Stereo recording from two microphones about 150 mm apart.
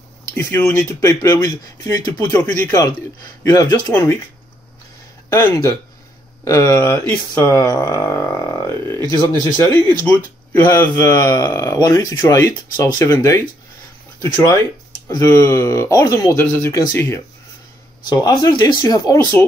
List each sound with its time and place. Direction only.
0.4 s speech: 15° left (ahead or behind)
5.3 s speech: 15° left (ahead or behind)
9.0 s speech: 30° right (ahead or behind)
9.6 s speech: 15° left (ahead or behind)
14.3 s speech: 10° left (ahead or behind)
18.0 s speech: 30° left (ahead or behind)